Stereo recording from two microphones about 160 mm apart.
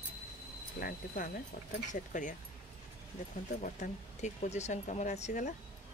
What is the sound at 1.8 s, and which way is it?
Speech, 50° left (ahead or behind).